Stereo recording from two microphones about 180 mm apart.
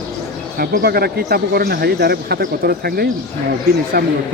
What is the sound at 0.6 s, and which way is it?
Speech, 60° right (ahead or behind).